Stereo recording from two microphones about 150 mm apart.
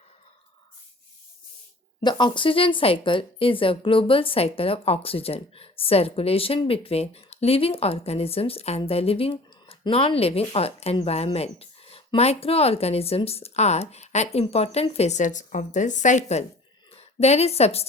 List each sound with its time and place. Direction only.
2.0 s a woman's voice: 30° left (ahead or behind)